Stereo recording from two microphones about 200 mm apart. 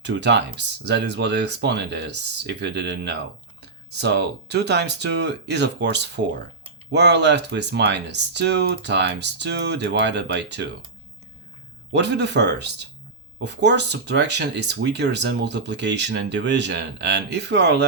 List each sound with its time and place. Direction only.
0.0 s speech: 60° right (ahead or behind)
11.9 s speech: 60° right (ahead or behind)